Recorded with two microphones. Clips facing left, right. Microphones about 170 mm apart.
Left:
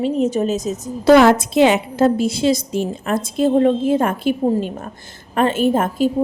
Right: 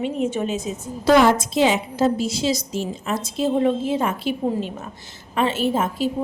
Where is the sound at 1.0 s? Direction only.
65° left (ahead or behind).